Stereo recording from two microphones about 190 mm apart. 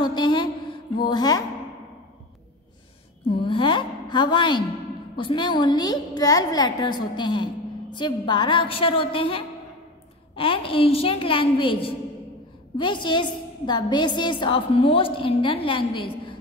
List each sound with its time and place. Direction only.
0.0 s a sound: 25° left (ahead or behind)
1.0 s a woman's voice: 20° left (ahead or behind)
3.3 s a woman's voice: 25° left (ahead or behind)